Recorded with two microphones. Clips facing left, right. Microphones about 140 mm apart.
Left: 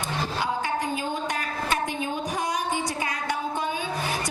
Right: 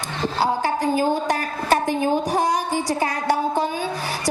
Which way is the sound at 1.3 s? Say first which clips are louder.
Right 7 dB; 35° right (ahead or behind).